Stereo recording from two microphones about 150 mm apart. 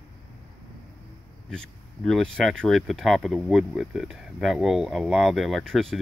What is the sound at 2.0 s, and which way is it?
Speech, 5° left (ahead or behind).